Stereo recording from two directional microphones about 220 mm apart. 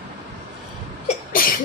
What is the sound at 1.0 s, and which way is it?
Sneeze, 40° left (ahead or behind).